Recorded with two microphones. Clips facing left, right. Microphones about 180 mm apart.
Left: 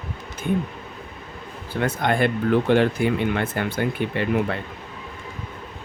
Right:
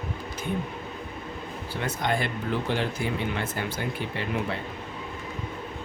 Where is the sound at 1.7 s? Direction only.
55° left (ahead or behind).